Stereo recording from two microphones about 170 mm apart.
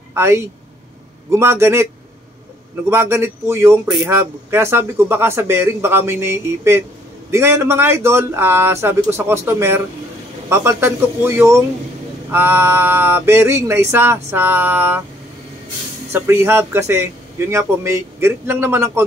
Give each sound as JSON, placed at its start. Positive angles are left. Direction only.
{"t": 0.1, "sound": "speech", "side_deg": -15}
{"t": 2.9, "sound": "speech", "side_deg": -15}
{"t": 16.1, "sound": "speech", "side_deg": -15}